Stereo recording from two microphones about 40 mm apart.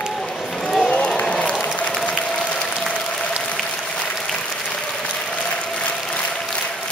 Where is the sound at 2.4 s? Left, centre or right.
Left.